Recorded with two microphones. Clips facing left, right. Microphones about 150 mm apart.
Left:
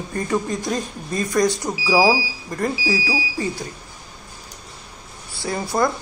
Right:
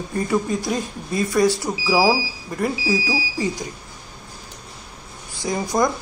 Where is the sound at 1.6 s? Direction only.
15° left (ahead or behind).